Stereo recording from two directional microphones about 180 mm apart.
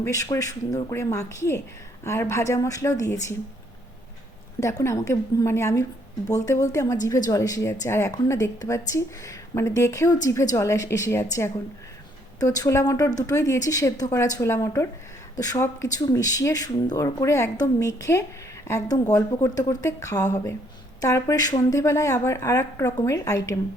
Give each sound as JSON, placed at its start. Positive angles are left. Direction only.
{"t": 0.0, "sound": "speech", "side_deg": 20}
{"t": 4.8, "sound": "speech", "side_deg": 15}